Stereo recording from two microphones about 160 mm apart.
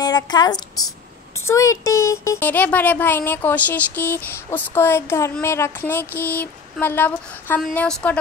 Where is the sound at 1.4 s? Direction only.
20° left (ahead or behind).